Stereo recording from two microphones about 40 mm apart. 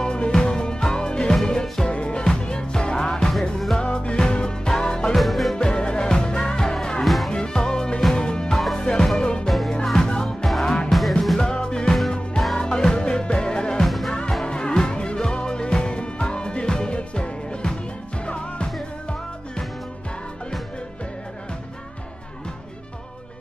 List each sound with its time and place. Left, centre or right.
0.0 s music: left
3.1 s music: centre
3.8 s music: left
5.1 s music: centre
5.6 s music: left
10.2 s music: centre
10.9 s music: centre
11.3 s music: centre
13.8 s music: centre
14.4 s music: left